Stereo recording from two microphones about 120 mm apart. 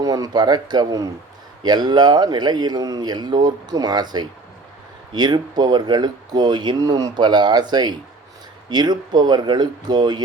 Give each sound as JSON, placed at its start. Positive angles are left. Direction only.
{"t": 0.0, "sound": "speech", "side_deg": -30}